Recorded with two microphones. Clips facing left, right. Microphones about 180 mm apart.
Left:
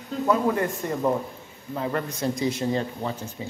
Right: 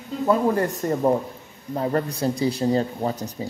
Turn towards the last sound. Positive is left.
turn(degrees=-40)  # may be behind; listen again after turning